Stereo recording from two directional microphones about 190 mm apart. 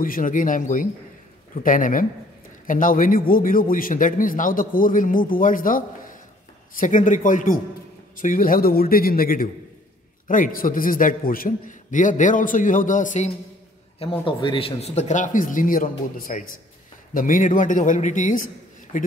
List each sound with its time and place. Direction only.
0.0 s a man's voice: 45° left (ahead or behind)
14.2 s a man's voice: 25° left (ahead or behind); by 19.1 s 45° left (ahead or behind)